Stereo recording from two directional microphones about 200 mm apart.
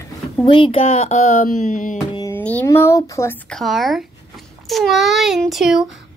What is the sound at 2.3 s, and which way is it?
Speech, 10° left (ahead or behind).